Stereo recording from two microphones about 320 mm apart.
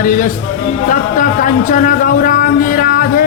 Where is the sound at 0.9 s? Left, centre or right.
Left.